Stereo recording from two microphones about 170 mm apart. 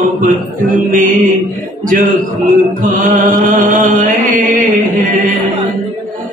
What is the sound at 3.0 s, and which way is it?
Chant, 55° right (ahead or behind).